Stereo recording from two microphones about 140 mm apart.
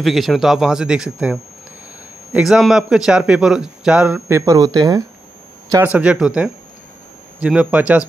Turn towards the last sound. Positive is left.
turn(degrees=-10)  # may be behind; listen again after turning